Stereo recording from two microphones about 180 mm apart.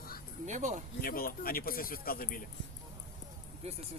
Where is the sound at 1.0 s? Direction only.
55° left (ahead or behind).